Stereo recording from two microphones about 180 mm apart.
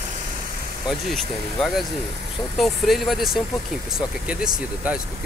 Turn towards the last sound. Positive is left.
turn(degrees=-5)  # may be behind; listen again after turning